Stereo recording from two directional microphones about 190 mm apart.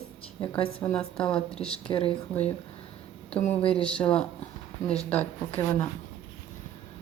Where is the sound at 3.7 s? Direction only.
5° left (ahead or behind).